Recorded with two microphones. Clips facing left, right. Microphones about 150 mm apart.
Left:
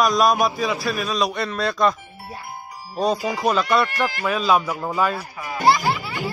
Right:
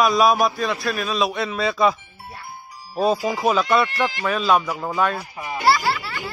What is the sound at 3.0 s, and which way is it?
Speech, centre (ahead or behind).